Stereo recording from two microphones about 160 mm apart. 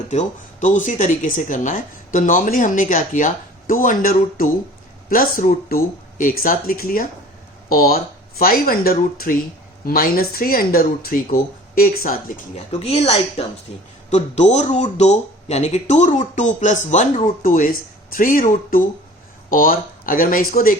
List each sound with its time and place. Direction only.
0.1 s speech: 50° left (ahead or behind)
12.8 s a woman's voice: 40° left (ahead or behind); by 20.7 s 65° left (ahead or behind)